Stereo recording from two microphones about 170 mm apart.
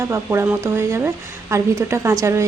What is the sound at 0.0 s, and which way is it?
Speech, 15° right (ahead or behind).